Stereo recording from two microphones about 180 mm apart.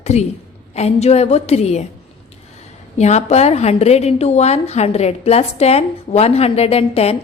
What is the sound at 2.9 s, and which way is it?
A woman's voice, 40° left (ahead or behind).